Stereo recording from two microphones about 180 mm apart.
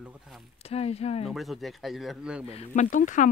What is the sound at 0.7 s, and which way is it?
Speech, 35° left (ahead or behind).